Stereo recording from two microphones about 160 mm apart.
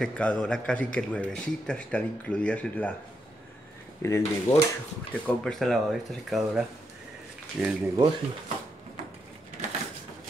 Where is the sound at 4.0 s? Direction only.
15° left (ahead or behind).